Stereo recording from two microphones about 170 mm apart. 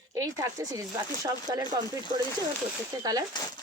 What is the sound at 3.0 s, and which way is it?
Speech, 20° right (ahead or behind).